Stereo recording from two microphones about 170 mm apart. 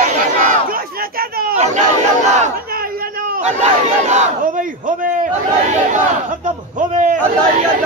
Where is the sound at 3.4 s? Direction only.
40° right (ahead or behind).